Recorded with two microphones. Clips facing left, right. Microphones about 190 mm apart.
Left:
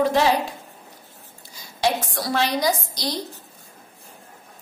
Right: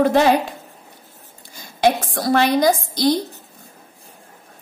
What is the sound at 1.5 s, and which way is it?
A woman's voice, 55° right (ahead or behind).